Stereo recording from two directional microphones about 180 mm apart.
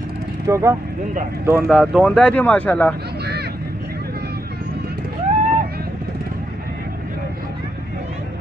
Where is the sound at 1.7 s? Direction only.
Centre (ahead or behind).